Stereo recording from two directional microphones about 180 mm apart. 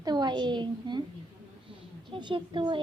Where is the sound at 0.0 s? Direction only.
25° right (ahead or behind).